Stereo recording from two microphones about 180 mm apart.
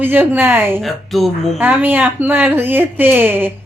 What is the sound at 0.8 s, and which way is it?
Speech, centre (ahead or behind).